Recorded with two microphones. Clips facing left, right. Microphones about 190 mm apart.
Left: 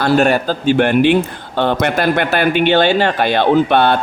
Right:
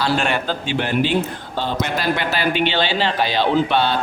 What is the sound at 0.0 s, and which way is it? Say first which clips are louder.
Speech: left 7 dB; 40° left (ahead or behind).